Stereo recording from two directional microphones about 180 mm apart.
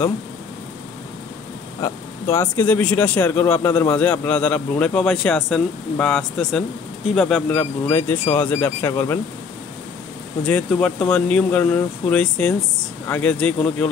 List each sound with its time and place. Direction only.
1.8 s speech: 10° left (ahead or behind)
10.4 s speech: 5° left (ahead or behind)